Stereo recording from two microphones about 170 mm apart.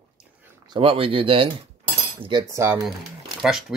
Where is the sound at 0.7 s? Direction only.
30° right (ahead or behind).